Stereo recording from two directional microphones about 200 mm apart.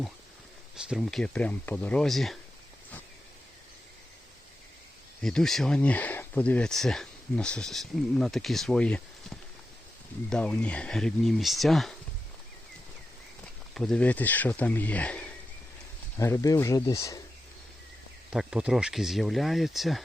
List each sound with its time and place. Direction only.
0.9 s speech: centre (ahead or behind)
5.2 s speech: centre (ahead or behind)
13.7 s speech: 5° left (ahead or behind)
18.3 s speech: 5° right (ahead or behind)